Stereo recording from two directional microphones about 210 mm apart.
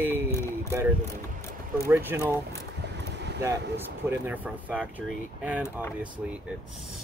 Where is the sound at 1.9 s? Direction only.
10° right (ahead or behind).